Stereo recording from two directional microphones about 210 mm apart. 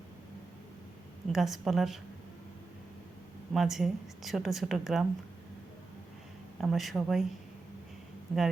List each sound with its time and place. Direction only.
1.3 s a woman's voice: centre (ahead or behind)
3.5 s a woman's voice: centre (ahead or behind)
6.6 s a woman's voice: centre (ahead or behind)
8.3 s a woman's voice: centre (ahead or behind)